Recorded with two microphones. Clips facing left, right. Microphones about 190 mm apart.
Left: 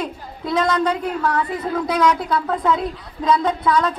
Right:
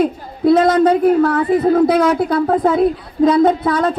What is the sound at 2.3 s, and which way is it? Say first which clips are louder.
A woman's voice: right 6 dB; 50° right (ahead or behind).